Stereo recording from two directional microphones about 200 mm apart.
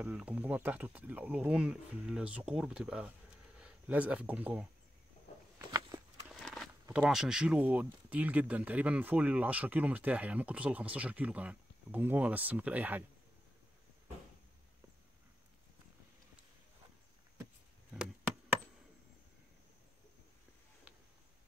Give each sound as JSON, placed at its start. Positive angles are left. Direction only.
{"t": 0.0, "sound": "speech", "side_deg": -5}
{"t": 6.4, "sound": "speech", "side_deg": 0}